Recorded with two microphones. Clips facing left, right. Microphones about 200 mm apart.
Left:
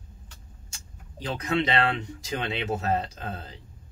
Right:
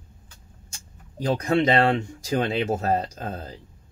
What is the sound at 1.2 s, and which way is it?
Speech, 45° right (ahead or behind).